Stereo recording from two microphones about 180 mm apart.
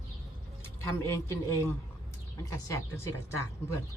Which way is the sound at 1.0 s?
15° left (ahead or behind).